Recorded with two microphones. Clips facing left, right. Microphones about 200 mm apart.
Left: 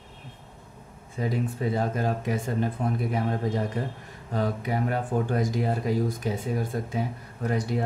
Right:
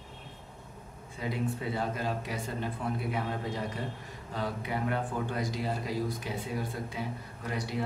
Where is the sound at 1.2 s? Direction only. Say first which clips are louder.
Left 5 dB; 45° left (ahead or behind).